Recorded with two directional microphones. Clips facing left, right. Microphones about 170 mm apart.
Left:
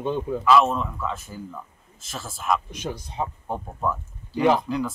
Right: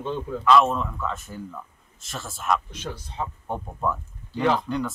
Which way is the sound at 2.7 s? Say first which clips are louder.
Left 3 dB; 15° left (ahead or behind).